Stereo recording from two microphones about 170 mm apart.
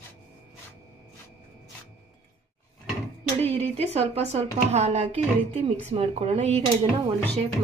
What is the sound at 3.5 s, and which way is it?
Speech, 35° right (ahead or behind).